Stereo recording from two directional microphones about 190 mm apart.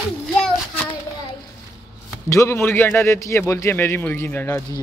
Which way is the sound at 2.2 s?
15° left (ahead or behind).